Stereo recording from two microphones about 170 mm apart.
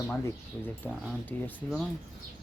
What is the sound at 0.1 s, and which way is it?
Speech, 10° left (ahead or behind).